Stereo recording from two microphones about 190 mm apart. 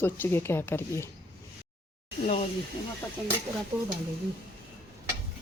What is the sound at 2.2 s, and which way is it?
Speech, 35° left (ahead or behind).